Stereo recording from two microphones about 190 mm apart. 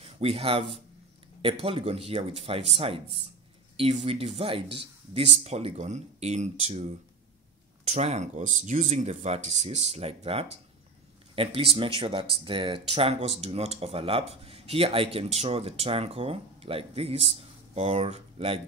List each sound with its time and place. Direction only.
0.0 s speech: 30° right (ahead or behind)